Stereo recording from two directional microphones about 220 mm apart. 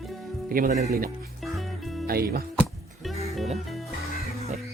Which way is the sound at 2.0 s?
45° right (ahead or behind).